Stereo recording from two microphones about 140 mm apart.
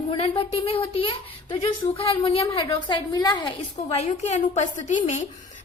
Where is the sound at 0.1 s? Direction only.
40° left (ahead or behind).